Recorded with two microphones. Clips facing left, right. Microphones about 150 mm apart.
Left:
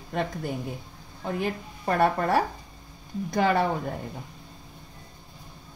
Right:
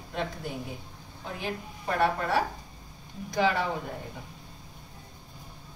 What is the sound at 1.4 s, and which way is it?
A woman's voice, 50° left (ahead or behind).